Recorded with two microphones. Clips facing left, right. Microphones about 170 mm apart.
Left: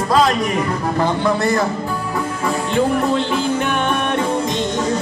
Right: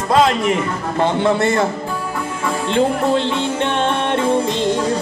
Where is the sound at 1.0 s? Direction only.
25° right (ahead or behind).